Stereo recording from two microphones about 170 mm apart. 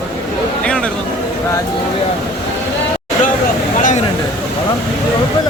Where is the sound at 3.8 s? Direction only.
50° left (ahead or behind).